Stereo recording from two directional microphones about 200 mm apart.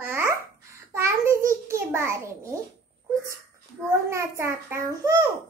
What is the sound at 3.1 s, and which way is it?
Wail, 15° right (ahead or behind).